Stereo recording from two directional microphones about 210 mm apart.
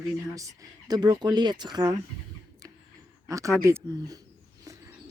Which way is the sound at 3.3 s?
15° right (ahead or behind).